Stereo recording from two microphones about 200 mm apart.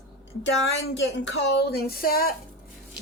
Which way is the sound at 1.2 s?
60° left (ahead or behind).